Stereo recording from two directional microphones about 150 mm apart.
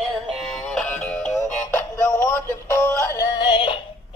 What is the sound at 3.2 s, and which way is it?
Music, 30° left (ahead or behind).